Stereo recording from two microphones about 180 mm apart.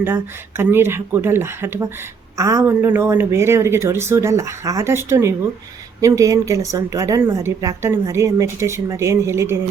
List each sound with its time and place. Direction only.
0.0 s speech: 10° right (ahead or behind)